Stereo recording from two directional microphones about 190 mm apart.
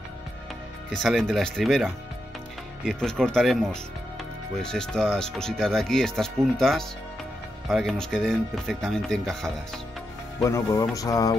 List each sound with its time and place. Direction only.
0.9 s speech: centre (ahead or behind)
10.4 s speech: 15° left (ahead or behind)